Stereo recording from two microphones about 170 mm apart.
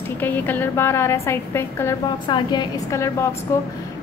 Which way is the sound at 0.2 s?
10° left (ahead or behind).